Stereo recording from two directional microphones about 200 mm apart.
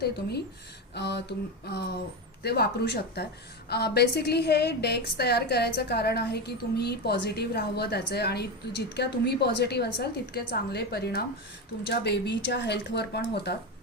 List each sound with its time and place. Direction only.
0.0 s a woman's voice: 55° left (ahead or behind)